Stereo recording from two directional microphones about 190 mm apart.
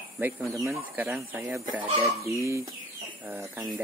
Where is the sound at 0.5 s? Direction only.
15° right (ahead or behind).